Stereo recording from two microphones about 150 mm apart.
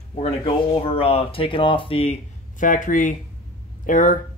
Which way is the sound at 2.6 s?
60° left (ahead or behind).